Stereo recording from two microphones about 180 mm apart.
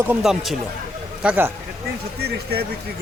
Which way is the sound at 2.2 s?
60° right (ahead or behind).